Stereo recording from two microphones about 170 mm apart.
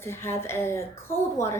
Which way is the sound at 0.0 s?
15° left (ahead or behind).